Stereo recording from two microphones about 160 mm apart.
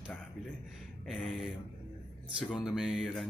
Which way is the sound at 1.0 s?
Centre (ahead or behind).